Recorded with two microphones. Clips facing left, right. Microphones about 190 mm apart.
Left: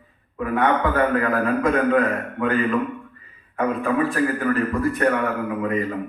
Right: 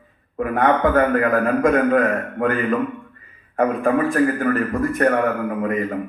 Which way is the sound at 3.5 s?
45° right (ahead or behind).